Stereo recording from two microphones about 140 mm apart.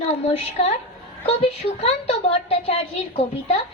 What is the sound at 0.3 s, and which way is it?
A woman's voice, 45° left (ahead or behind).